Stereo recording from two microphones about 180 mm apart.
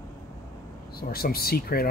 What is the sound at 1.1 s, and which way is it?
Speech, 55° left (ahead or behind).